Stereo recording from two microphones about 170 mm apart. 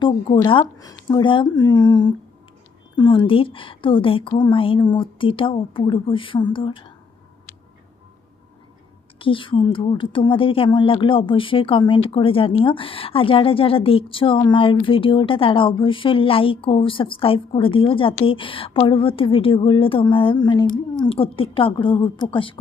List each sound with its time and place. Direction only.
0.0 s a woman's voice: 30° left (ahead or behind)
9.1 s a woman's voice: 30° left (ahead or behind)